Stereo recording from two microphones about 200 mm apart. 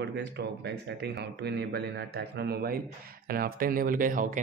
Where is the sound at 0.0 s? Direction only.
60° right (ahead or behind).